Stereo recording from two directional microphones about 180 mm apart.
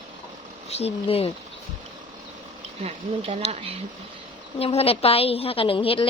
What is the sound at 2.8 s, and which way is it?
Speech, 35° right (ahead or behind).